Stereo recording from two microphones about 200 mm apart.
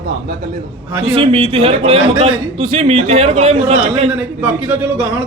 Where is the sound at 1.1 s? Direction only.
25° right (ahead or behind).